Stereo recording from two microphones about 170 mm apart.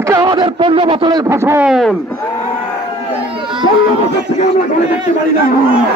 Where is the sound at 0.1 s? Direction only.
20° right (ahead or behind).